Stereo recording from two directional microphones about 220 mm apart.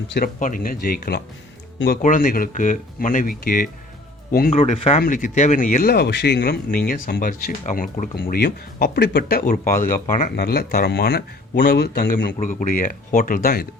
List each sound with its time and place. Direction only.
0.1 s speech: 40° left (ahead or behind)
4.5 s speech: 25° left (ahead or behind); by 13.7 s 40° left (ahead or behind)